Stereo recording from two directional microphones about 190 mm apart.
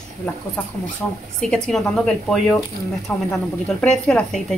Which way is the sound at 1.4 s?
5° left (ahead or behind).